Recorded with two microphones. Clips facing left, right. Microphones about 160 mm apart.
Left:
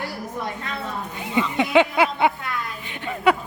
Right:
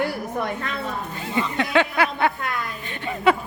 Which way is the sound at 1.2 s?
15° left (ahead or behind).